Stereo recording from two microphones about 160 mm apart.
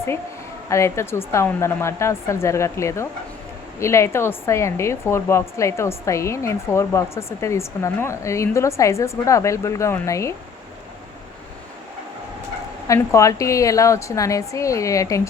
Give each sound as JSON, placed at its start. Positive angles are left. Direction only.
{"t": 0.7, "sound": "a woman's voice", "side_deg": 15}
{"t": 12.9, "sound": "a woman's voice", "side_deg": 20}